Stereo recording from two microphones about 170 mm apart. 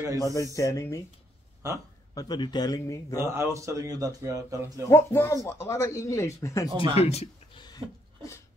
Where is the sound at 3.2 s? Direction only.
15° right (ahead or behind).